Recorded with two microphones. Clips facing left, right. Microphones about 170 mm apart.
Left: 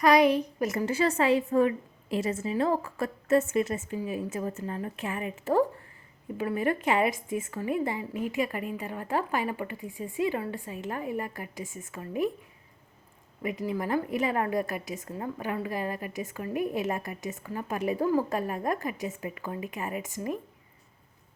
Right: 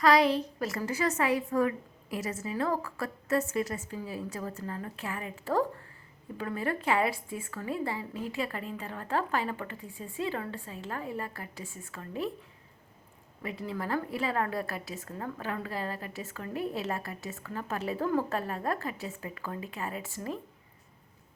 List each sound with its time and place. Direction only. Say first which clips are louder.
0.0 s a woman's voice: left 3 dB; 20° left (ahead or behind)
13.4 s a woman's voice: left 5 dB; 15° left (ahead or behind)